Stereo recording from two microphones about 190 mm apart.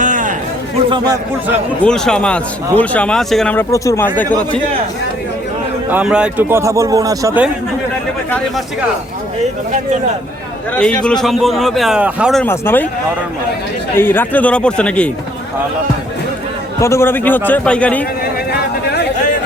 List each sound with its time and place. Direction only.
0.0 s a sound: 45° right (ahead or behind)
1.8 s a man's voice: 5° left (ahead or behind)
5.9 s speech: 5° right (ahead or behind)
10.8 s a man's voice: 5° left (ahead or behind)
12.4 s speech: 10° left (ahead or behind)
13.9 s speech: 10° left (ahead or behind)
16.8 s speech: 15° left (ahead or behind)